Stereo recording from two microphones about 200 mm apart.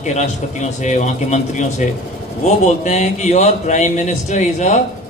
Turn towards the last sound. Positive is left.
turn(degrees=35)  # may be behind; listen again after turning